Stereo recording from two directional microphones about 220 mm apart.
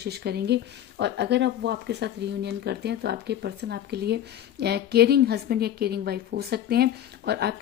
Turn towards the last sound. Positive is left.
turn(degrees=-45)  # may be behind; listen again after turning